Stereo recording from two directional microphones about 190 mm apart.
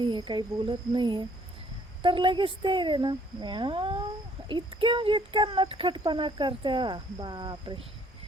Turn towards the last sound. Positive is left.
turn(degrees=-25)  # may be behind; listen again after turning